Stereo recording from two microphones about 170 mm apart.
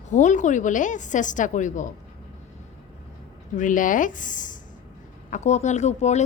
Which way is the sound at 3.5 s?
50° left (ahead or behind).